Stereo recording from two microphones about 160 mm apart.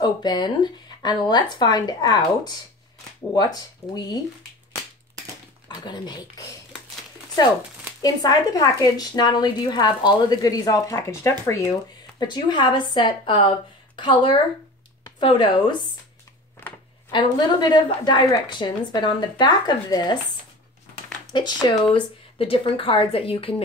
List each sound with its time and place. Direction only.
0.0 s a woman's voice: 25° left (ahead or behind)
5.9 s a woman's voice: 25° left (ahead or behind)
8.0 s a woman's voice: 25° left (ahead or behind)
12.2 s a woman's voice: 30° left (ahead or behind)
17.1 s a woman's voice: 25° left (ahead or behind)
21.3 s a woman's voice: 30° left (ahead or behind)